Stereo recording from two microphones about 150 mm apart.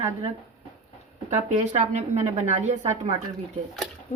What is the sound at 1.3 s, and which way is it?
Speech, 50° right (ahead or behind).